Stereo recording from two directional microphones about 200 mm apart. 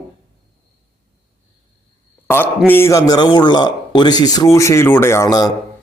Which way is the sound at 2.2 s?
10° left (ahead or behind).